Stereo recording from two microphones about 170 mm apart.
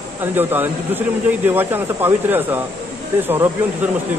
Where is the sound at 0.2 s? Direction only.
10° right (ahead or behind).